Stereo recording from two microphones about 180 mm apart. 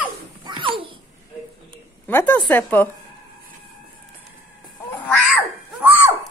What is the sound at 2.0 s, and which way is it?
Speech, 10° left (ahead or behind).